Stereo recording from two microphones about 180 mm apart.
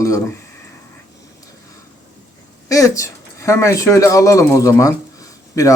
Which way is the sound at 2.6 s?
20° left (ahead or behind).